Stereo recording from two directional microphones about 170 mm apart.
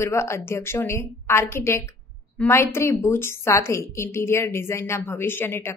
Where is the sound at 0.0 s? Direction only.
15° left (ahead or behind).